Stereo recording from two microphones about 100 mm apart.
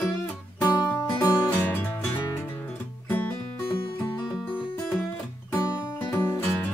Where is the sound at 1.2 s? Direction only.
25° left (ahead or behind).